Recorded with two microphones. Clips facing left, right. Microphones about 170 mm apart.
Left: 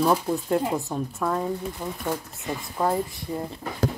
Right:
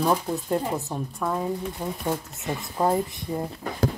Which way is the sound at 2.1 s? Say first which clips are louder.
Right 1 dB; 20° right (ahead or behind).